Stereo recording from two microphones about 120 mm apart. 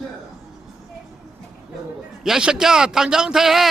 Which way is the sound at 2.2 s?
5° right (ahead or behind).